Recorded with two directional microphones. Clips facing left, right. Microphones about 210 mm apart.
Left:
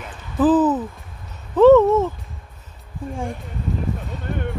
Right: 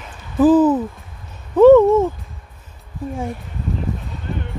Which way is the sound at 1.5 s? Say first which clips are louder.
Right 2 dB; 10° right (ahead or behind).